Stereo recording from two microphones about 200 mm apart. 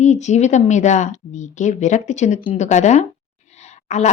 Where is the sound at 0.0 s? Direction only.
35° left (ahead or behind).